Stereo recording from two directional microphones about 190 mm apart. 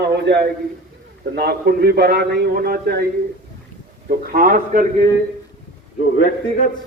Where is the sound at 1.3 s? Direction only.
55° right (ahead or behind).